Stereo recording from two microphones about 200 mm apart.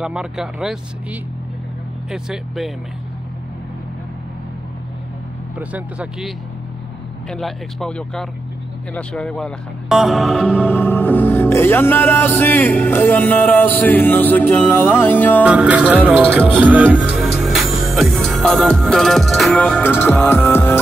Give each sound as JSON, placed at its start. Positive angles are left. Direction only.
{"t": 0.0, "sound": "speech", "side_deg": -5}
{"t": 2.0, "sound": "speech", "side_deg": -5}
{"t": 5.6, "sound": "speech", "side_deg": -5}
{"t": 10.7, "sound": "music", "side_deg": 10}
{"t": 15.4, "sound": "speech", "side_deg": -5}
{"t": 16.3, "sound": "music", "side_deg": -10}